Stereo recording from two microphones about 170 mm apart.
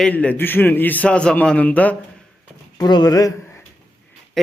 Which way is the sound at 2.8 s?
25° left (ahead or behind).